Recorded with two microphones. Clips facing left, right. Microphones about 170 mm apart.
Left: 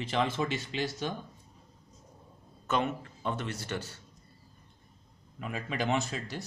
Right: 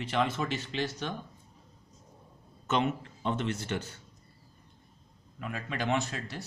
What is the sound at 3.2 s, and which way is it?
Speech, 20° right (ahead or behind).